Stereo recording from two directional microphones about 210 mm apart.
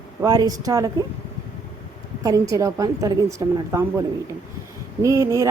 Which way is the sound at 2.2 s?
15° right (ahead or behind).